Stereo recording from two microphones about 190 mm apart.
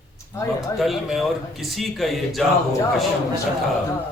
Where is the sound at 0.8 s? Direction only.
Centre (ahead or behind).